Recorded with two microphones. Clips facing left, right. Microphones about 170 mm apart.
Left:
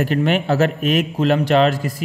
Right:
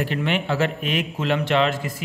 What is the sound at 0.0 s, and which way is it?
A man's voice, 40° left (ahead or behind).